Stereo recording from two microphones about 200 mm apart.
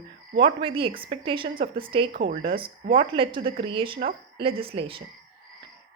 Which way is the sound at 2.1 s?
55° right (ahead or behind).